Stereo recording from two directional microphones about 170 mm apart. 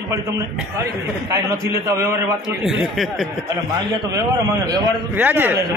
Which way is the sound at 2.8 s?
Centre (ahead or behind).